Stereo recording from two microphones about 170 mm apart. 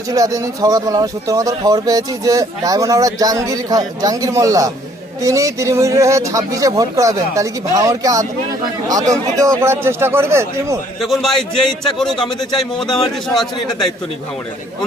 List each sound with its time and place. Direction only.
0.1 s speech: 20° right (ahead or behind)
11.0 s a man's voice: centre (ahead or behind)